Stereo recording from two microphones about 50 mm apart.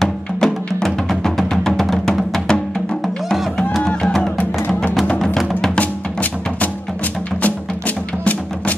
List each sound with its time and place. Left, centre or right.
0.0 s music: centre
4.4 s music: left